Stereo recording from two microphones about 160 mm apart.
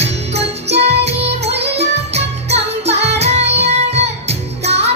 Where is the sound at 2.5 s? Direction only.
40° right (ahead or behind).